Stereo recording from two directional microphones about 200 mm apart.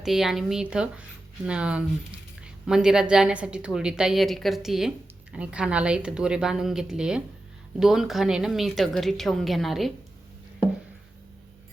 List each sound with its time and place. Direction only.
0.0 s a woman's voice: centre (ahead or behind)